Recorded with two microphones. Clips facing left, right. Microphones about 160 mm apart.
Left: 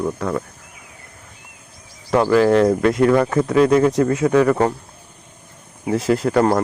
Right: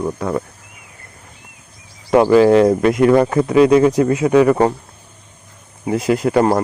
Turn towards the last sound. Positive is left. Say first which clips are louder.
# right 2 dB
turn(degrees=-10)  # may be behind; listen again after turning